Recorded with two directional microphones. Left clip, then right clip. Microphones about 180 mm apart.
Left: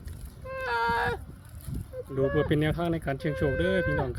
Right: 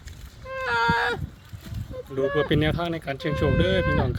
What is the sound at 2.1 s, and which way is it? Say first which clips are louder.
Speech: right 3 dB; 5° right (ahead or behind).